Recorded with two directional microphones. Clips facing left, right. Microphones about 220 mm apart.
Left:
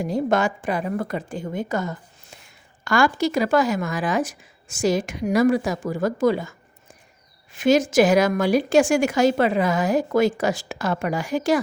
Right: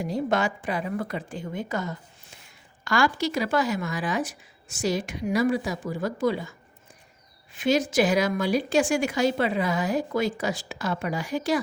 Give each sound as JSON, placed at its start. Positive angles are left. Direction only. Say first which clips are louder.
{"t": 0.0, "sound": "speech", "louder": "left 4 dB", "side_deg": 45}
{"t": 7.5, "sound": "speech", "louder": "left 5 dB", "side_deg": 45}